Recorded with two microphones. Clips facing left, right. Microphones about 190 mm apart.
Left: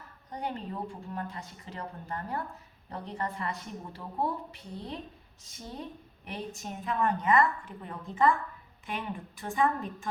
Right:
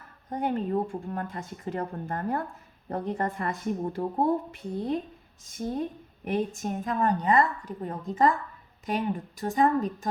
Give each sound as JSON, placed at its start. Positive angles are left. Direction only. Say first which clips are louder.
{"t": 0.3, "sound": "a woman's voice", "louder": "right 8 dB", "side_deg": -50}